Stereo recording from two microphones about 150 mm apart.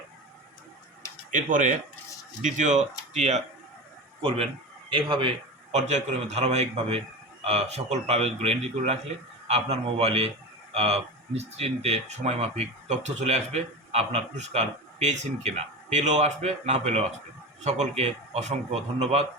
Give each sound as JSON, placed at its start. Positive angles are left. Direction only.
{"t": 1.3, "sound": "speech", "side_deg": -60}
{"t": 4.2, "sound": "speech", "side_deg": -35}
{"t": 5.7, "sound": "speech", "side_deg": -50}